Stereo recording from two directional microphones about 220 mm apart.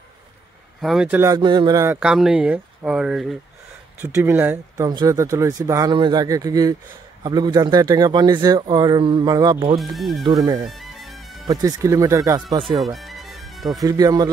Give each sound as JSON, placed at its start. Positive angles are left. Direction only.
{"t": 0.7, "sound": "speech", "side_deg": 0}
{"t": 9.8, "sound": "speech", "side_deg": 0}
{"t": 10.2, "sound": "speech", "side_deg": -20}
{"t": 10.6, "sound": "music", "side_deg": 0}
{"t": 11.4, "sound": "speech", "side_deg": -15}
{"t": 12.6, "sound": "music", "side_deg": 0}
{"t": 13.8, "sound": "speech", "side_deg": -15}